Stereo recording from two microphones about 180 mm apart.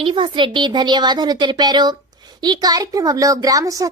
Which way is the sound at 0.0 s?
30° right (ahead or behind).